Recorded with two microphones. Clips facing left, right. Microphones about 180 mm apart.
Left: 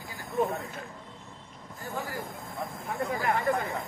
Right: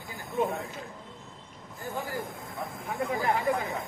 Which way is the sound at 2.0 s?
Centre (ahead or behind).